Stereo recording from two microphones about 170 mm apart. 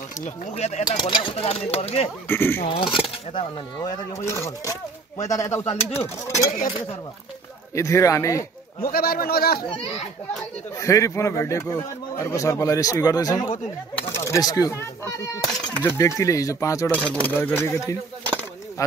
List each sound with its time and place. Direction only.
0.2 s speech: 40° left (ahead or behind)
0.8 s speech: 25° left (ahead or behind)
2.2 s a man's voice: 15° left (ahead or behind)
2.6 s speech: 30° left (ahead or behind)
3.3 s a man's voice: 20° left (ahead or behind)
5.7 s speech: 35° left (ahead or behind)
7.7 s a man's voice: 15° left (ahead or behind)
8.8 s a man's voice: 65° left (ahead or behind)
10.8 s a man's voice: 20° left (ahead or behind)